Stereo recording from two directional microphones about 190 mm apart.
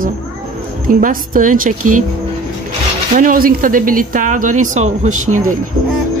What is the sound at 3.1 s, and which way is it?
Speech, 45° right (ahead or behind).